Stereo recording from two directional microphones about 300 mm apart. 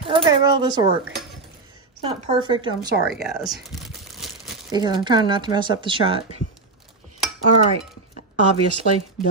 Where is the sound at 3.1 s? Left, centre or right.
Centre.